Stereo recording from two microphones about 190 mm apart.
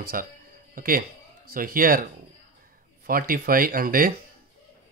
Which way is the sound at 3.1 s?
50° right (ahead or behind).